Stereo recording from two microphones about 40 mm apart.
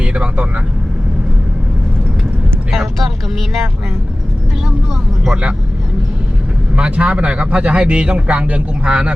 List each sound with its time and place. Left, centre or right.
0.0 s speech: right
2.7 s speech: centre
6.7 s speech: right